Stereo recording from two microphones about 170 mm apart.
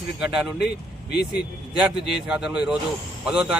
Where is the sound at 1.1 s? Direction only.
75° left (ahead or behind).